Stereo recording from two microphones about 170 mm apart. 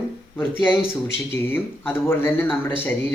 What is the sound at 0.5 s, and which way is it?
Speech, 5° right (ahead or behind).